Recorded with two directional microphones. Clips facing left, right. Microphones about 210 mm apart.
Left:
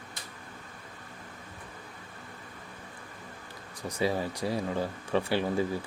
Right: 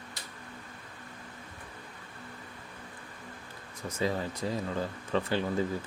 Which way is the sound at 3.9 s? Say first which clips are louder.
Left 2 dB; 15° left (ahead or behind).